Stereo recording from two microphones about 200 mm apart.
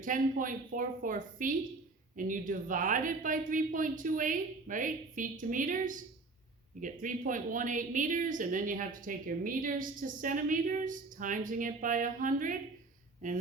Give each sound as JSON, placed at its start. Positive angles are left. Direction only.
{"t": 0.0, "sound": "a woman's voice", "side_deg": -40}